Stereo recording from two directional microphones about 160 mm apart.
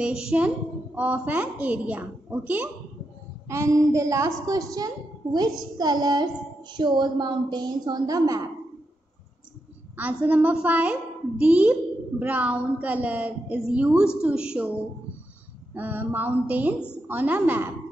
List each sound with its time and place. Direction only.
0.0 s a woman's voice: 5° right (ahead or behind); by 8.5 s 20° right (ahead or behind)
9.9 s a woman's voice: 10° right (ahead or behind)
15.7 s a woman's voice: 10° right (ahead or behind)